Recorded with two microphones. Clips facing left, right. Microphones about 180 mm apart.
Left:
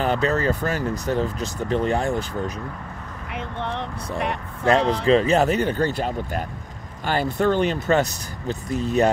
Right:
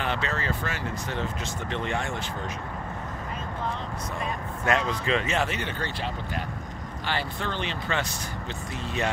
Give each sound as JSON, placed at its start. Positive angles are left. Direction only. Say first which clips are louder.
{"t": 0.0, "sound": "speech", "louder": "left 9 dB", "side_deg": 40}
{"t": 3.3, "sound": "vehicle", "louder": "left 5 dB", "side_deg": 70}
{"t": 4.6, "sound": "speech", "louder": "left 8 dB", "side_deg": 35}